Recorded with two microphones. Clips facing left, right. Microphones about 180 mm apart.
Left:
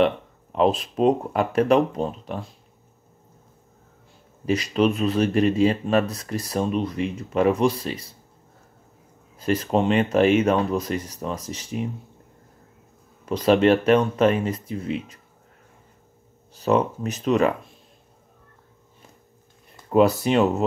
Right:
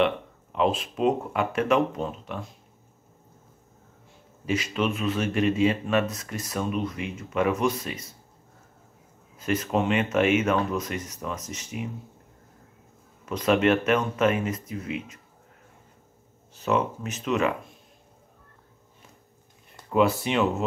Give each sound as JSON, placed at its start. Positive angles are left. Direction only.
{"t": 0.0, "sound": "speech", "side_deg": 40}
{"t": 4.5, "sound": "speech", "side_deg": 35}
{"t": 9.4, "sound": "speech", "side_deg": 35}
{"t": 13.2, "sound": "speech", "side_deg": 35}
{"t": 16.5, "sound": "speech", "side_deg": 35}
{"t": 19.9, "sound": "speech", "side_deg": 40}